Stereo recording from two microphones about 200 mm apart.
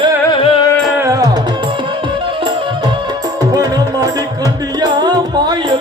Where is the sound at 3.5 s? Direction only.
20° right (ahead or behind).